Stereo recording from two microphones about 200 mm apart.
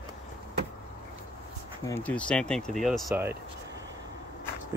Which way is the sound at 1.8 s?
10° left (ahead or behind).